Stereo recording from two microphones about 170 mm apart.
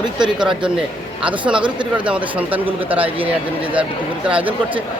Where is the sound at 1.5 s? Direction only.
30° right (ahead or behind).